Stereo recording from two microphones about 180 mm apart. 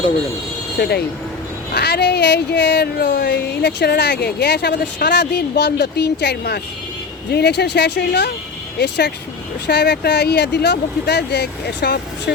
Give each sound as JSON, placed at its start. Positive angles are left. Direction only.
{"t": 0.8, "sound": "speech", "side_deg": 65}